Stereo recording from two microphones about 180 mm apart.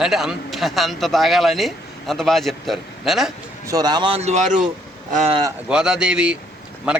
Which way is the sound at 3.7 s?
20° right (ahead or behind).